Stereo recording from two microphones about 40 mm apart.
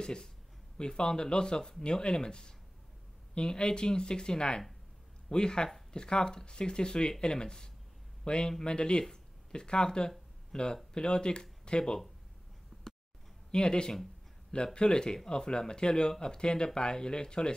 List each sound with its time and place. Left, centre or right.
0.0 s speech: centre
13.5 s speech: left